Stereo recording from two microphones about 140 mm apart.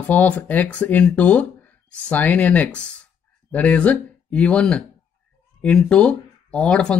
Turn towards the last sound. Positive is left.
turn(degrees=5)  # may be behind; listen again after turning